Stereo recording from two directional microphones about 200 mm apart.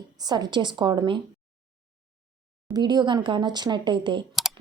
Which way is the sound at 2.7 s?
20° right (ahead or behind).